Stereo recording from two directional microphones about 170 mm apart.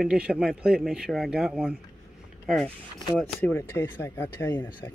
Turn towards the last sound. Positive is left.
turn(degrees=15)  # may be behind; listen again after turning